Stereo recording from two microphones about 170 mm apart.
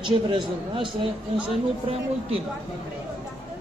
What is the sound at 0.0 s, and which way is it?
Speech, 30° right (ahead or behind).